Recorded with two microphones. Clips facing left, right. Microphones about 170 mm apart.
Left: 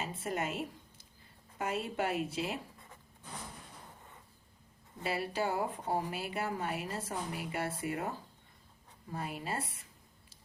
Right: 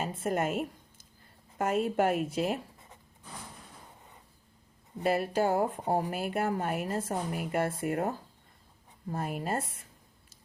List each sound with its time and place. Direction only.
0.0 s a sound: 50° right (ahead or behind)
1.5 s a woman's voice: 50° right (ahead or behind)
5.0 s a woman's voice: 50° right (ahead or behind)
9.1 s a woman's voice: 45° right (ahead or behind)